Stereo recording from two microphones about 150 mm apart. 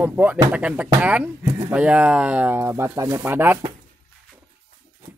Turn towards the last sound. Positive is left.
turn(degrees=-15)  # may be behind; listen again after turning